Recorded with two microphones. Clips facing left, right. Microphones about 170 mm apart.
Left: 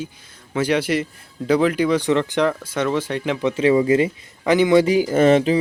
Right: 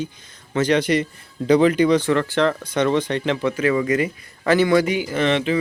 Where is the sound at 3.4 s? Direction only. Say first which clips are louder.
Left 7 dB; 25° left (ahead or behind).